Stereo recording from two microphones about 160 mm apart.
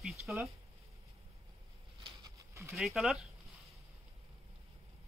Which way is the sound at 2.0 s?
25° right (ahead or behind).